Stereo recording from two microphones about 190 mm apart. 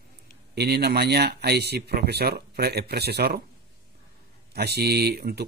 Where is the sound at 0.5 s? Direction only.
60° right (ahead or behind).